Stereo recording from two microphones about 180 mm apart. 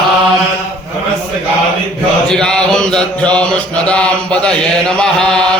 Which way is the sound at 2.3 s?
5° left (ahead or behind).